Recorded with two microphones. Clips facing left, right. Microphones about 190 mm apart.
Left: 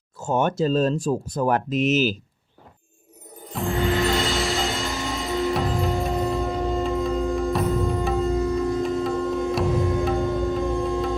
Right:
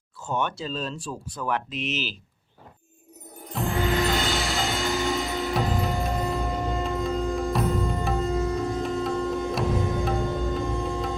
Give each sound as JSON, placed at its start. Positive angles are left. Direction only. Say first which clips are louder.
{"t": 0.2, "sound": "speech", "louder": "left 7 dB", "side_deg": 45}
{"t": 3.4, "sound": "music", "louder": "left 2 dB", "side_deg": 0}